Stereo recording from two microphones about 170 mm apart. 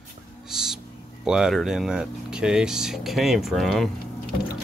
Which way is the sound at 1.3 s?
5° right (ahead or behind).